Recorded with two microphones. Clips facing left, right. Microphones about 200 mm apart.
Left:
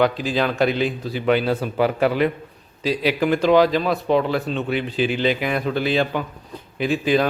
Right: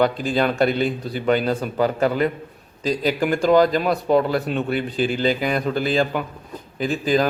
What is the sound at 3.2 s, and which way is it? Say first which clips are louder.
A man's voice: left 1 dB; centre (ahead or behind).